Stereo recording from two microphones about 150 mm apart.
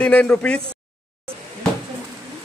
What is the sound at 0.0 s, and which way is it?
Speech, 10° left (ahead or behind).